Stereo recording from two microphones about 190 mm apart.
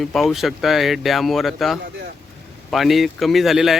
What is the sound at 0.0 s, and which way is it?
Speech, centre (ahead or behind).